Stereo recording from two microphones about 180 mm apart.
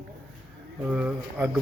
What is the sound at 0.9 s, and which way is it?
Speech, 5° right (ahead or behind).